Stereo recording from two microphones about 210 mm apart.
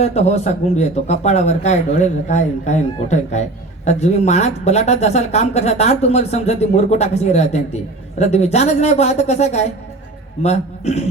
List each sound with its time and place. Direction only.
0.0 s speech: 30° left (ahead or behind)